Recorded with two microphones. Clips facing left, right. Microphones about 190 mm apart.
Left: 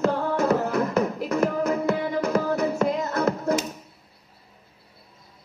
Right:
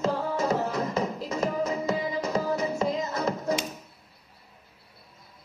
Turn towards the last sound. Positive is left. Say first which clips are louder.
# left 4 dB
turn(degrees=60)  # may be behind; listen again after turning